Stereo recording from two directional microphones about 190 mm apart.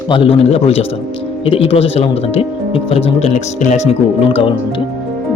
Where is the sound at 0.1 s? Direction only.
30° left (ahead or behind).